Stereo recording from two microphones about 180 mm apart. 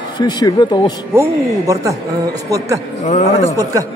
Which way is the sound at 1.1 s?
15° right (ahead or behind).